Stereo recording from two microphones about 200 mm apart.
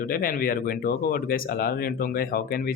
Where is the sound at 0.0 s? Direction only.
45° left (ahead or behind).